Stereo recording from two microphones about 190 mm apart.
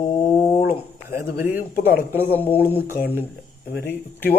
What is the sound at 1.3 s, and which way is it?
Speech, 10° right (ahead or behind).